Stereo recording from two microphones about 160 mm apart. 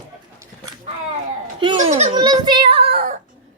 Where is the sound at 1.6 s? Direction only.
30° right (ahead or behind).